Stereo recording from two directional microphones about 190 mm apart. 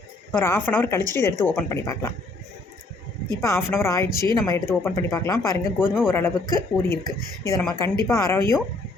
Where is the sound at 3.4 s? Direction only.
15° left (ahead or behind).